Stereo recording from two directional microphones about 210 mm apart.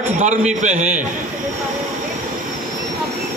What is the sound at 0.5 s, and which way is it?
Speech, 35° right (ahead or behind).